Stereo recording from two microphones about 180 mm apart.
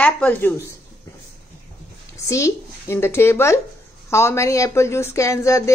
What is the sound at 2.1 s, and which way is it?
Speech, 15° left (ahead or behind).